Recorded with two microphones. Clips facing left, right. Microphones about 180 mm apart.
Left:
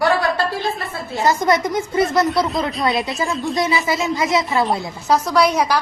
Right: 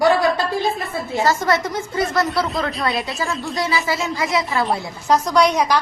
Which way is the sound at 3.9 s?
20° left (ahead or behind).